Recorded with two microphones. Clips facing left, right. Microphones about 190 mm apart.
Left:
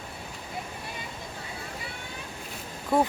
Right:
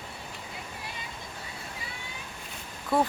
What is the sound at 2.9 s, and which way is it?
Speech, 15° left (ahead or behind).